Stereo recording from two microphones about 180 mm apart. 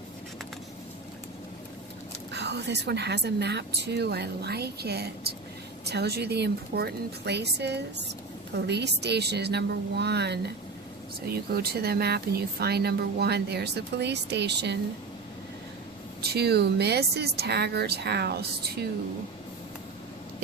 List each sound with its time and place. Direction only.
2.3 s a woman's voice: 70° right (ahead or behind)
16.2 s speech: 65° right (ahead or behind)